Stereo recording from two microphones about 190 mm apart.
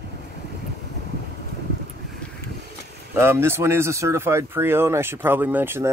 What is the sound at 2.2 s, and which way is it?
Vehicle, 5° left (ahead or behind).